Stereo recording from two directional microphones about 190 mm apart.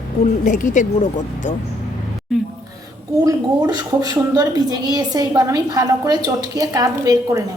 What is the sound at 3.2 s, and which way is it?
A woman's voice, 20° right (ahead or behind).